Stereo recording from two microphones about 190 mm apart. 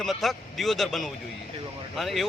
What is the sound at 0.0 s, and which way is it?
Speech, centre (ahead or behind).